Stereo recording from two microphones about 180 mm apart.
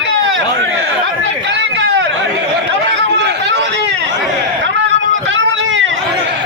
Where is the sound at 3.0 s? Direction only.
80° right.